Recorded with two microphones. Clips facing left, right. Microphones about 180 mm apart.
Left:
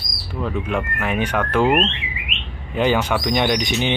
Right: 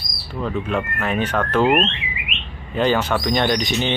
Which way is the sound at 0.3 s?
10° left (ahead or behind).